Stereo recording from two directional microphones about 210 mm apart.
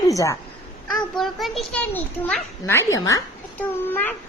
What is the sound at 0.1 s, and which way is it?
Speech, 15° left (ahead or behind).